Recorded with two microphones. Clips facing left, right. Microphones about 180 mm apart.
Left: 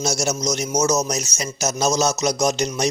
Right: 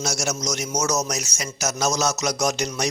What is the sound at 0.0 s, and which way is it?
Speech, 25° left (ahead or behind).